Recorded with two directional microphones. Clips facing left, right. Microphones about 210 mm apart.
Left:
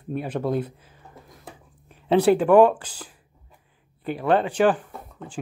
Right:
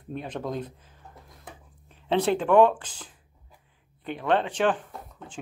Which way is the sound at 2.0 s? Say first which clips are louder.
Left 6 dB; 10° left (ahead or behind).